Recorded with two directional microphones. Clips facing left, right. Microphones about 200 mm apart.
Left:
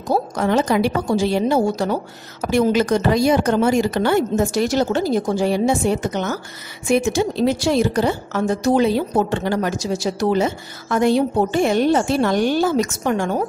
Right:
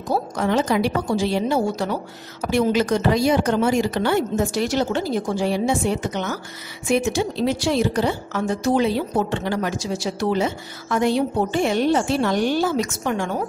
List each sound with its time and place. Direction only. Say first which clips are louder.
0.1 s a woman's voice: left 3 dB; 45° left (ahead or behind)